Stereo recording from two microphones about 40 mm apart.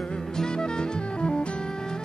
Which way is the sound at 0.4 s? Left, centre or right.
Centre.